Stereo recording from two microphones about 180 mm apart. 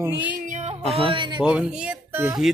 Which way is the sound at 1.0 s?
25° right (ahead or behind).